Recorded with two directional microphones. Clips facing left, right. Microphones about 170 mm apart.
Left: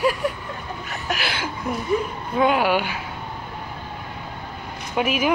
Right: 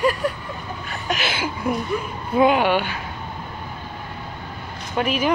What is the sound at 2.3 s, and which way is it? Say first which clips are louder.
Speech: right 2 dB; centre (ahead or behind).